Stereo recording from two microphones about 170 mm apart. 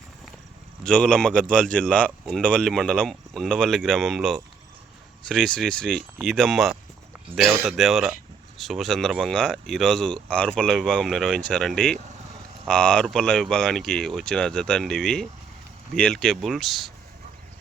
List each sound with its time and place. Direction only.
0.9 s speech: 5° left (ahead or behind)